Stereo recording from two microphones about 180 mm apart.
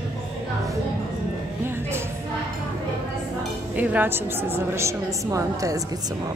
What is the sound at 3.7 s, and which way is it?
A woman's voice, 10° right (ahead or behind).